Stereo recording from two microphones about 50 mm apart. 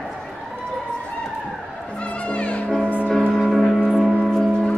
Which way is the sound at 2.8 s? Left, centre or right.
Right.